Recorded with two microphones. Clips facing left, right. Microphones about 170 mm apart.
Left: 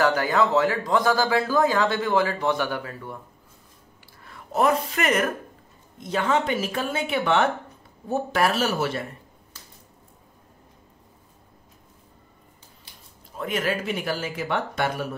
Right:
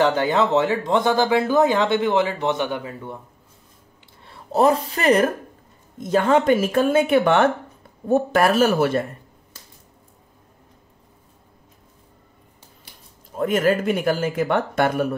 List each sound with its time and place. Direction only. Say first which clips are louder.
0.0 s speech: right 3 dB; 25° right (ahead or behind)
4.2 s a sound: right 5 dB; 30° right (ahead or behind)
4.8 s speech: right 6 dB; 35° right (ahead or behind)
5.9 s speech: right 6 dB; 45° right (ahead or behind)
13.4 s speech: right 7 dB; 45° right (ahead or behind)